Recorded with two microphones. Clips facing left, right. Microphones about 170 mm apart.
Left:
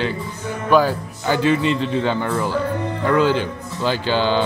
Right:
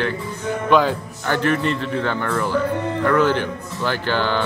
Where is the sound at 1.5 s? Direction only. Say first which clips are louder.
Left 2 dB; 55° right (ahead or behind).